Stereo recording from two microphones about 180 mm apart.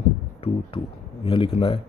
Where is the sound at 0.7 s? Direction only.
30° left (ahead or behind).